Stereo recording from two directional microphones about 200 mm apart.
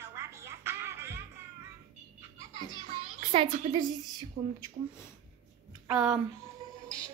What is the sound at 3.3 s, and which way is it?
Speech, 30° right (ahead or behind).